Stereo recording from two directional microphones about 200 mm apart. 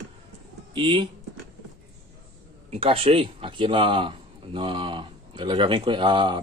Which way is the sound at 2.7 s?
30° right (ahead or behind).